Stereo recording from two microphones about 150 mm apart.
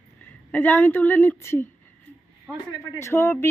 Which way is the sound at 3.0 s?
15° left (ahead or behind).